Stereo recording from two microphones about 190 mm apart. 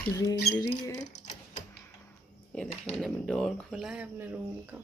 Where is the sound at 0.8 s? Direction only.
20° left (ahead or behind).